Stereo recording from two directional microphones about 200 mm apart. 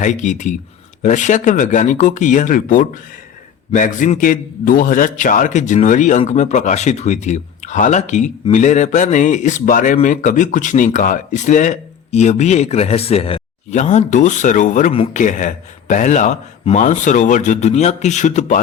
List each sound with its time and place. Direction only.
0.0 s a man's voice: 40° left (ahead or behind)